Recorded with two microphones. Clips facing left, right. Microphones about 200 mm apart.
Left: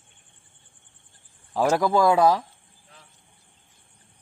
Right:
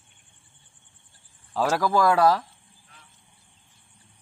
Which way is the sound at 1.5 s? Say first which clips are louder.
Left 2 dB; 15° left (ahead or behind).